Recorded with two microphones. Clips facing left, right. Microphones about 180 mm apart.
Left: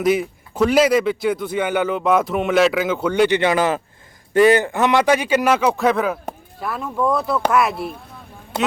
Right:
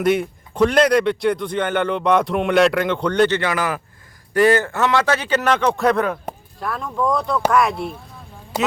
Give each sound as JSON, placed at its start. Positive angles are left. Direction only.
{"t": 0.0, "sound": "a man's voice", "side_deg": 0}
{"t": 8.5, "sound": "a man's voice", "side_deg": -10}